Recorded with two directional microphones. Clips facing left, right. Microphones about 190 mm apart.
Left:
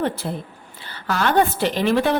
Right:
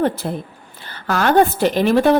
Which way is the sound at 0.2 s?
50° right (ahead or behind).